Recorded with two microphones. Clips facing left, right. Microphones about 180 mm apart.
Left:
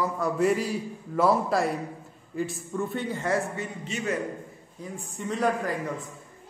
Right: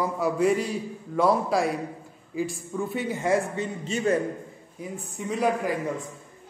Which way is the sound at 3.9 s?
30° right (ahead or behind).